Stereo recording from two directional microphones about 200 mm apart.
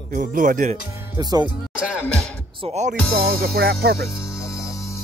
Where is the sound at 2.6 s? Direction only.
30° right (ahead or behind).